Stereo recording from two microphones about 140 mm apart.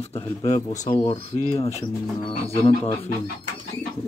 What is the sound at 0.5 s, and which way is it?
Speech, 60° left (ahead or behind).